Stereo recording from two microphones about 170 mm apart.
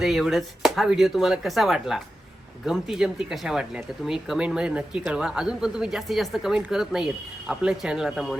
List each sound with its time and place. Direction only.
0.0 s speech: centre (ahead or behind)